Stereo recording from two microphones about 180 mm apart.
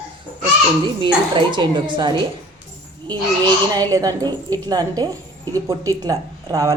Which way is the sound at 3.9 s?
20° right (ahead or behind).